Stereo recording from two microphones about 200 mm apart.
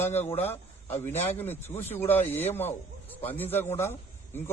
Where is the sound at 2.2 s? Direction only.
30° left (ahead or behind).